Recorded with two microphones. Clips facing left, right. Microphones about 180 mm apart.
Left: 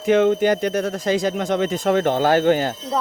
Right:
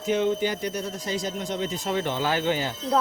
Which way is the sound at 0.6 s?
90° left.